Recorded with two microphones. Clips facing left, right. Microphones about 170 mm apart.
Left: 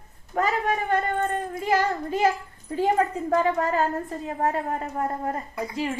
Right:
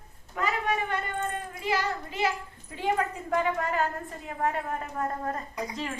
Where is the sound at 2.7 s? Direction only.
40° left (ahead or behind).